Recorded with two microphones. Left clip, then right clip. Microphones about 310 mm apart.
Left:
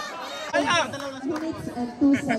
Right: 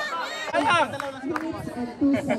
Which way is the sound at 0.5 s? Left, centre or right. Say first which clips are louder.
Right 1 dB; right.